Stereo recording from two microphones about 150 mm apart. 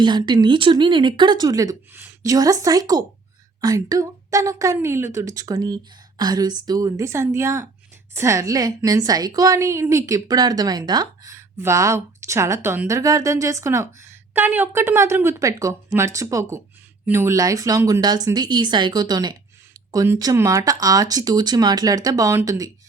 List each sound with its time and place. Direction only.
0.0 s a woman's voice: 30° right (ahead or behind)